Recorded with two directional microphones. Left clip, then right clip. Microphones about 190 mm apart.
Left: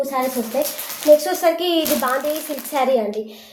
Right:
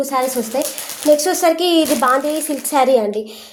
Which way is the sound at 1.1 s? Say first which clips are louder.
Even; 40° right (ahead or behind).